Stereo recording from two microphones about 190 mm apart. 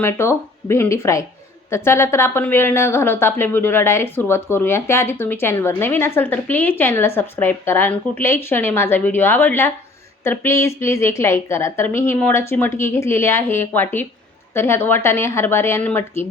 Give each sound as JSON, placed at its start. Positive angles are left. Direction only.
{"t": 0.0, "sound": "a woman's voice", "side_deg": 15}